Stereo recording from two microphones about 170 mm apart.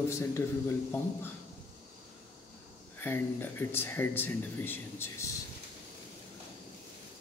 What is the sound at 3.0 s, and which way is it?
Speech, 15° left (ahead or behind).